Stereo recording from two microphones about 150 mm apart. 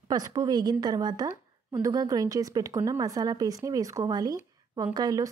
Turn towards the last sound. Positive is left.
turn(degrees=-25)  # may be behind; listen again after turning